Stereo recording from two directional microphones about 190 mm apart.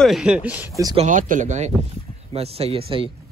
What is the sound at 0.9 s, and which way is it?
Speech, 40° right (ahead or behind).